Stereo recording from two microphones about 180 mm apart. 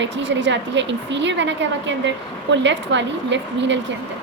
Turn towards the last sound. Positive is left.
turn(degrees=-85)